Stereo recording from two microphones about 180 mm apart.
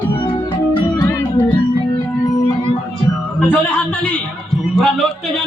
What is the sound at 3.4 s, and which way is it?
Speech, 10° left (ahead or behind).